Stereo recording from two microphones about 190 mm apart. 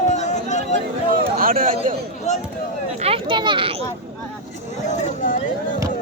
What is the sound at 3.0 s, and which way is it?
Speech, 30° right (ahead or behind).